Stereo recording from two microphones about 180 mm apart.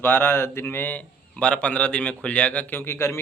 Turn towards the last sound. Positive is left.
turn(degrees=15)  # may be behind; listen again after turning